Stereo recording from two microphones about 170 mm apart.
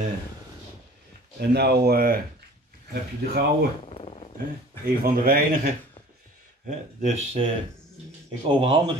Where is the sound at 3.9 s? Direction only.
35° left (ahead or behind).